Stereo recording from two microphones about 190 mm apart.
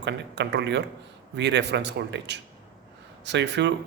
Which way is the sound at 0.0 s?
65° right (ahead or behind).